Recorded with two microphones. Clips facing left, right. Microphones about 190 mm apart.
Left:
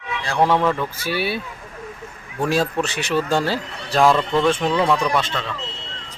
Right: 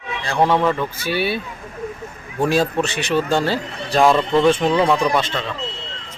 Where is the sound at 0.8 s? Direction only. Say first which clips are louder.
Right 2 dB; 10° left (ahead or behind).